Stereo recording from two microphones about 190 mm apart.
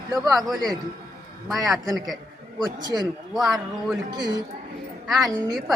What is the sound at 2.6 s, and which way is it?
Speech, 20° right (ahead or behind).